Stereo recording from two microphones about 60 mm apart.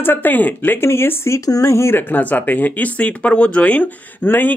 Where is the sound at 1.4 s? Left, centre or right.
Left.